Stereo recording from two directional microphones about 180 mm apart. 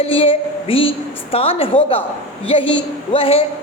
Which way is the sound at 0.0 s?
30° left (ahead or behind).